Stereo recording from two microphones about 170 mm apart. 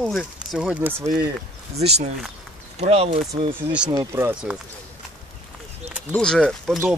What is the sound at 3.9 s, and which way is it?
Speech, 20° right (ahead or behind).